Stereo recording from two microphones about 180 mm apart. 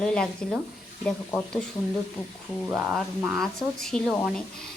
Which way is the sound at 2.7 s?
10° right (ahead or behind).